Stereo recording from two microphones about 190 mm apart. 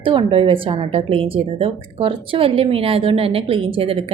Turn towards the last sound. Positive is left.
turn(degrees=-30)  # may be behind; listen again after turning